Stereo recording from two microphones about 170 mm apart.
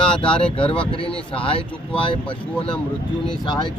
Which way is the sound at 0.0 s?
30° left (ahead or behind).